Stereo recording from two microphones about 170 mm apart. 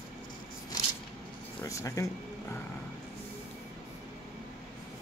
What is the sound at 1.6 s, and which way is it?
Speech, 20° left (ahead or behind).